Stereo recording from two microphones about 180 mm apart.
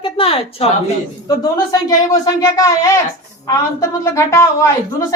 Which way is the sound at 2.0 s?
20° left (ahead or behind).